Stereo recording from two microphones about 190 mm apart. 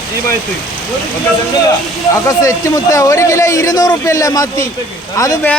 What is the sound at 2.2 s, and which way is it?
Speech, 15° left (ahead or behind).